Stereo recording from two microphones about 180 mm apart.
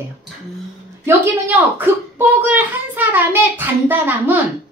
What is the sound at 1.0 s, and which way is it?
A child's voice, 10° right (ahead or behind).